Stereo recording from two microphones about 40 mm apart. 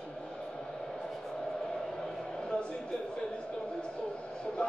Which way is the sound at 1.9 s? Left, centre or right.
Centre.